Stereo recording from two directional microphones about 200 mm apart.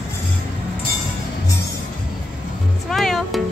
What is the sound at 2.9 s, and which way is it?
Music, centre (ahead or behind).